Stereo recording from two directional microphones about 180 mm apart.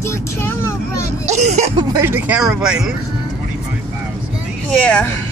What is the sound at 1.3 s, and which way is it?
Speech, 40° right (ahead or behind).